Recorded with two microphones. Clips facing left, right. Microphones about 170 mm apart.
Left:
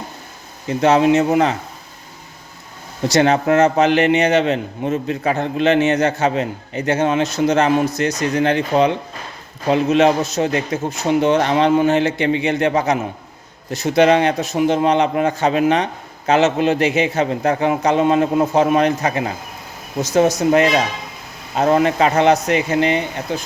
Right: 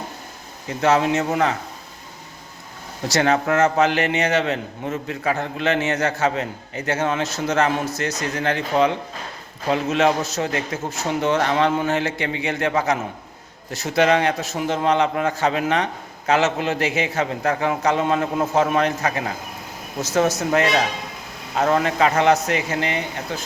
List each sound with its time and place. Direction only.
0.8 s a man's voice: 20° left (ahead or behind)
3.1 s a man's voice: 20° left (ahead or behind)